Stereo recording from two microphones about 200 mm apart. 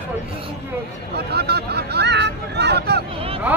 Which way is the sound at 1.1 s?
55° right (ahead or behind).